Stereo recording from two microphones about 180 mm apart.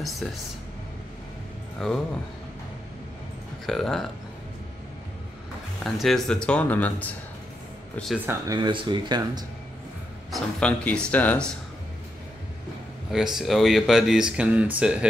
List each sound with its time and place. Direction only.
0.0 s speech: centre (ahead or behind)
3.6 s speech: centre (ahead or behind)
5.9 s speech: centre (ahead or behind)
8.3 s speech: 20° right (ahead or behind)
10.3 s speech: 5° left (ahead or behind)
13.1 s speech: 5° right (ahead or behind)